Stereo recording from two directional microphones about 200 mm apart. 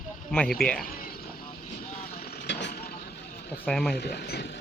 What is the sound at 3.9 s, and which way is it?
Speech, 55° left (ahead or behind).